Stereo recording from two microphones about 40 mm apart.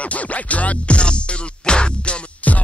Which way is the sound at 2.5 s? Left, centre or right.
Left.